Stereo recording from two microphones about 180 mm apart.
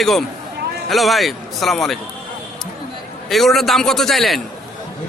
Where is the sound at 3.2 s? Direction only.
Centre (ahead or behind).